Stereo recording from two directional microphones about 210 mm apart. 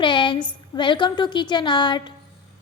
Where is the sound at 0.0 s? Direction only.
20° left (ahead or behind).